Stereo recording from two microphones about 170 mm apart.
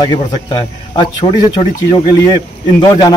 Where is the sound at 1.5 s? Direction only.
25° left (ahead or behind).